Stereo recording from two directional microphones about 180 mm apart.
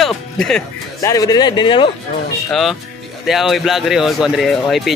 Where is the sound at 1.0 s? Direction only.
20° left (ahead or behind).